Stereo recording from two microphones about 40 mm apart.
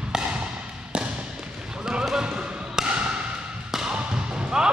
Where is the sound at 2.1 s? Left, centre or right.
Centre.